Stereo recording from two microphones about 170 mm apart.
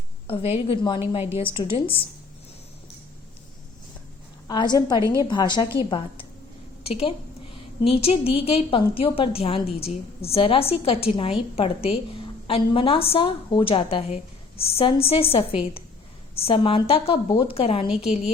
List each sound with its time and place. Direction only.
0.5 s a woman's voice: 30° left (ahead or behind)
4.4 s a woman's voice: 25° left (ahead or behind)
4.9 s a woman's voice: 20° right (ahead or behind)
5.3 s a woman's voice: 25° left (ahead or behind)